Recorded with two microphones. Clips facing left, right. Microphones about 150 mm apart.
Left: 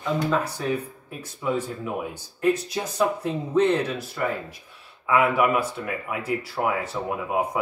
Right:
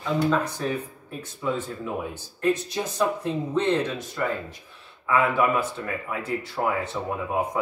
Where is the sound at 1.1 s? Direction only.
10° left (ahead or behind).